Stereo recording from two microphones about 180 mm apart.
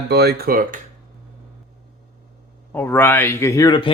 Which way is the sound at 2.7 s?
10° left (ahead or behind).